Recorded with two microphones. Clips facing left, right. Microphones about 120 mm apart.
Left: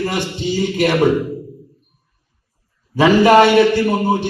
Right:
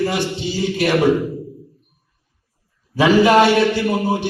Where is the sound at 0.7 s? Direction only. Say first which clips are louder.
Even; 15° left (ahead or behind).